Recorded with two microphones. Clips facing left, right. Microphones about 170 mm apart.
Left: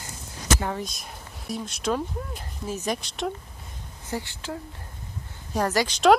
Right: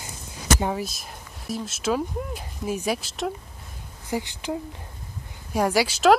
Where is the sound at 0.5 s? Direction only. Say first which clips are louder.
Right 3 dB; 15° right (ahead or behind).